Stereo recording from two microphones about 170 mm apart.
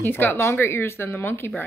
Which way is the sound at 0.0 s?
10° left (ahead or behind).